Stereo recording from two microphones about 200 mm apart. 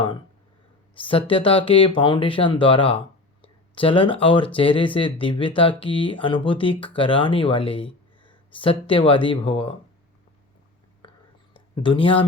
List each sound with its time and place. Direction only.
0.9 s speech: 25° left (ahead or behind)
11.5 s speech: 25° left (ahead or behind)